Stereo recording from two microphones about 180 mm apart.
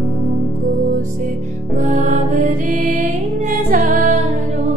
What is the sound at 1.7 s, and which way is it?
Music, 45° right (ahead or behind).